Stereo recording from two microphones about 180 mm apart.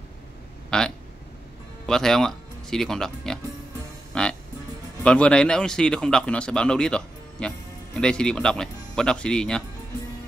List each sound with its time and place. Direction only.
0.7 s a man's voice: 5° left (ahead or behind)
4.1 s music: 5° left (ahead or behind)
5.0 s a man's voice: 5° left (ahead or behind)